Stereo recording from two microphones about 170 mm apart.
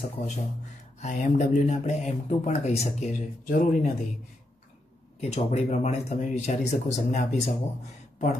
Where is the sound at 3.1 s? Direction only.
50° left (ahead or behind).